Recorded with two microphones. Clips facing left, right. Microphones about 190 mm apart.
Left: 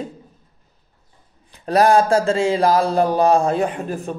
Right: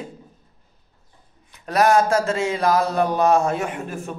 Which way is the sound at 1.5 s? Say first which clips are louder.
Left 3 dB; 35° left (ahead or behind).